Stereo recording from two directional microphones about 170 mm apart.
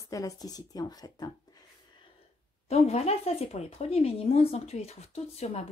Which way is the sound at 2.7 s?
40° left (ahead or behind).